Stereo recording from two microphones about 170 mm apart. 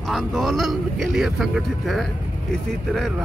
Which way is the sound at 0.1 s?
Centre (ahead or behind).